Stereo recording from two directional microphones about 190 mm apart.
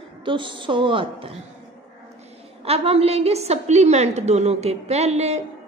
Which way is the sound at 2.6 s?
30° right (ahead or behind).